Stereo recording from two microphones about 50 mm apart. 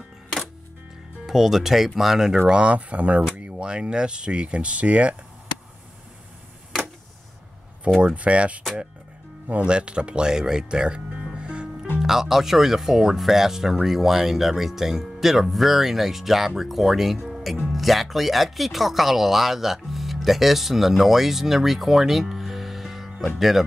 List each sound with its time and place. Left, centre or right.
1.2 s speech: centre
2.3 s speech: centre
8.0 s speech: right; by 11.3 s centre
11.3 s music: centre
12.0 s speech: centre